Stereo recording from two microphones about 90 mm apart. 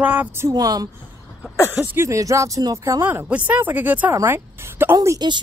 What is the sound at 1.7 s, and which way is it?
A woman's voice, 25° right (ahead or behind).